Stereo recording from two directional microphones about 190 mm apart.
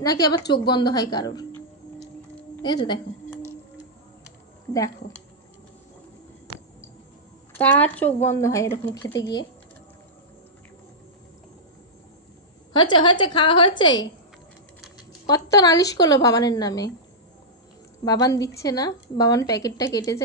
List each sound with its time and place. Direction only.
0.0 s a woman's voice: 20° left (ahead or behind)
2.6 s a woman's voice: 25° left (ahead or behind)
7.5 s a woman's voice: 10° left (ahead or behind)
12.7 s a woman's voice: 25° left (ahead or behind)
15.2 s a woman's voice: 15° left (ahead or behind)
18.0 s a woman's voice: 20° left (ahead or behind)